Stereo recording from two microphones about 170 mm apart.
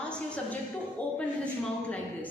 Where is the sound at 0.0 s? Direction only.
5° left (ahead or behind).